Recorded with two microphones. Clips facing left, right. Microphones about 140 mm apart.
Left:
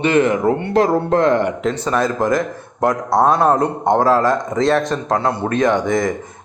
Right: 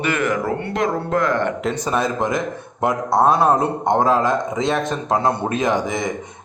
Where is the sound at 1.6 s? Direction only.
10° right (ahead or behind).